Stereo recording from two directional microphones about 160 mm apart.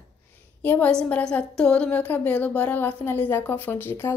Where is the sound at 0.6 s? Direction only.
10° left (ahead or behind).